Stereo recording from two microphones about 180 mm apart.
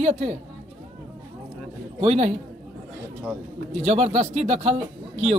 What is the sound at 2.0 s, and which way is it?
Speech, 35° right (ahead or behind).